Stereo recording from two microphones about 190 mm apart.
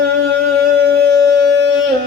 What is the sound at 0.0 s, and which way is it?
Music, 60° right (ahead or behind).